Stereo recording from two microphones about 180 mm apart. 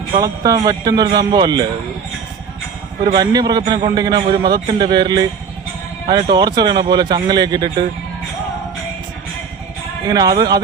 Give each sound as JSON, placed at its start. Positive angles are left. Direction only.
{"t": 0.2, "sound": "speech", "side_deg": -20}
{"t": 3.0, "sound": "speech", "side_deg": -20}
{"t": 10.1, "sound": "speech", "side_deg": -20}